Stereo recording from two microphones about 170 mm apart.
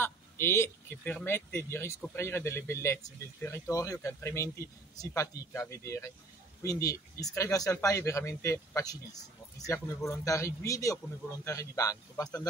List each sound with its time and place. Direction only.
0.0 s speech: 15° left (ahead or behind)